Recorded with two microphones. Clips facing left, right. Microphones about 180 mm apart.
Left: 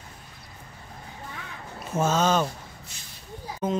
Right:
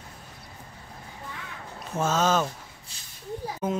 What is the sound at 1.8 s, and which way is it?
Speech, centre (ahead or behind).